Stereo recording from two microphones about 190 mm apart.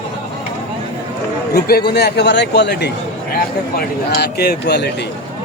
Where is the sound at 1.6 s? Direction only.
55° left (ahead or behind).